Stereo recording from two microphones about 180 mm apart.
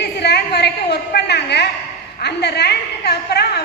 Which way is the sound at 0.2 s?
65° left (ahead or behind).